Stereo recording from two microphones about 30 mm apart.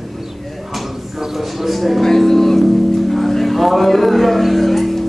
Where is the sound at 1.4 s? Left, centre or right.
Centre.